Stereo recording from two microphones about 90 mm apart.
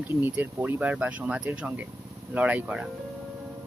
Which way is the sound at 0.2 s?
20° right (ahead or behind).